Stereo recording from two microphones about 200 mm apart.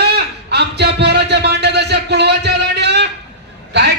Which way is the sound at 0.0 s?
55° right (ahead or behind).